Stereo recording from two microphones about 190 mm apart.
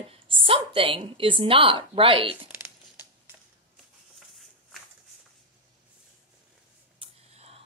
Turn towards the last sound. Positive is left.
turn(degrees=-35)  # may be behind; listen again after turning